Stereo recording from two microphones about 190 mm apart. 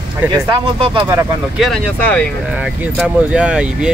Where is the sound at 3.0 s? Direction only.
5° right (ahead or behind).